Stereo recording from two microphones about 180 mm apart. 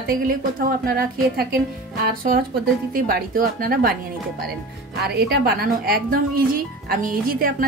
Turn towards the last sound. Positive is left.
turn(degrees=-55)  # may be behind; listen again after turning